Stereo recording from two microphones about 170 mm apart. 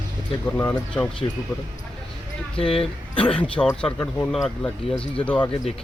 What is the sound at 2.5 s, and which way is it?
Speech, 35° left (ahead or behind).